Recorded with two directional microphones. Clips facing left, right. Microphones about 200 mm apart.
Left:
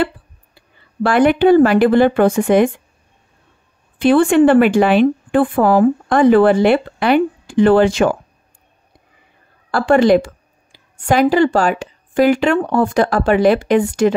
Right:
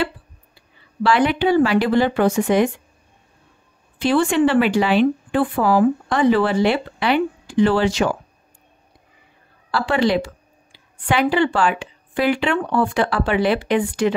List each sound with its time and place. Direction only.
1.0 s a woman's voice: 50° left (ahead or behind)
4.0 s a woman's voice: 55° left (ahead or behind)
9.7 s speech: 50° left (ahead or behind)